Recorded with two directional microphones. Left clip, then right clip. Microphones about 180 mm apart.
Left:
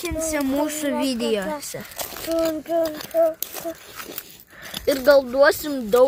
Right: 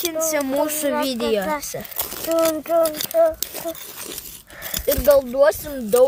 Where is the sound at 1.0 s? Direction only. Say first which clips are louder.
Right 2 dB; 10° right (ahead or behind).